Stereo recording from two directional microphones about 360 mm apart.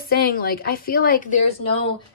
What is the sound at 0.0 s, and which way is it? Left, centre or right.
A woman's voice, left.